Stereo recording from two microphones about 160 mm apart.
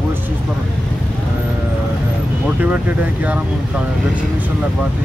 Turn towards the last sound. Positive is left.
turn(degrees=-10)  # may be behind; listen again after turning